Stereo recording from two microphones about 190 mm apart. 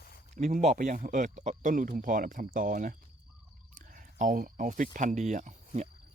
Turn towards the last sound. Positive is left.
turn(degrees=-40)  # may be behind; listen again after turning